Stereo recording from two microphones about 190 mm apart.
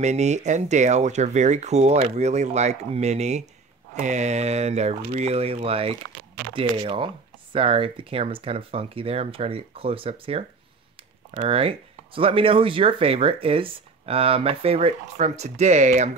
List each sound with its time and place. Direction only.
0.0 s speech: 35° right (ahead or behind)